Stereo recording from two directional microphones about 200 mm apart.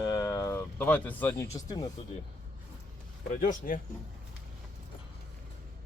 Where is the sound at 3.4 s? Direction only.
45° left (ahead or behind).